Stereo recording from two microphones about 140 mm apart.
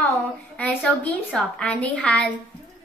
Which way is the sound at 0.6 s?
10° left (ahead or behind).